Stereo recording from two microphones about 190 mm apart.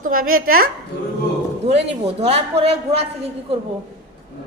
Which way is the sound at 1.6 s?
30° right (ahead or behind).